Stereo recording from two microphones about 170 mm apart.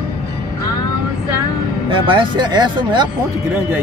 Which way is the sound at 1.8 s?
30° right (ahead or behind).